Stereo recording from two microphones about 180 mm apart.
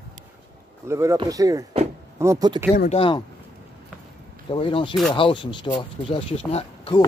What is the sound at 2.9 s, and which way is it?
Speech, 30° left (ahead or behind).